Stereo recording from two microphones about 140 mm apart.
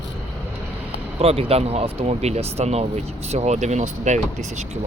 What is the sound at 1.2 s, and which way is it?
Speech, 45° right (ahead or behind).